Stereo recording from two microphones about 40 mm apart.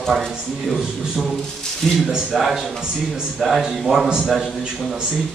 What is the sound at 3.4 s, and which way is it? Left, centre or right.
Speech, centre.